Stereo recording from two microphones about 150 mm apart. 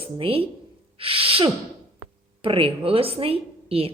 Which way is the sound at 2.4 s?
40° right (ahead or behind).